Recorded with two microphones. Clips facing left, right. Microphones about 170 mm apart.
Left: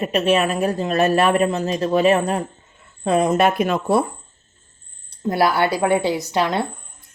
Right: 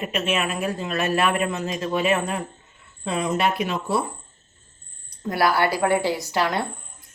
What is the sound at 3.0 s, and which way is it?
Speech, 50° left (ahead or behind).